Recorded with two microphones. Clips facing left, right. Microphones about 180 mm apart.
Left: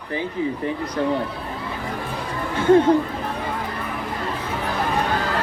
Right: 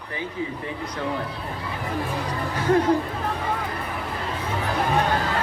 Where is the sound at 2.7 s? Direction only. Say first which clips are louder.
Left 5 dB; 30° left (ahead or behind).